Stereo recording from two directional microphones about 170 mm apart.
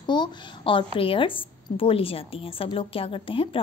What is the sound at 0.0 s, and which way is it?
A woman's voice, 25° left (ahead or behind).